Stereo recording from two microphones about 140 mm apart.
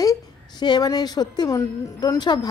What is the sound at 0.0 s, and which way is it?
A woman's voice, 30° left (ahead or behind).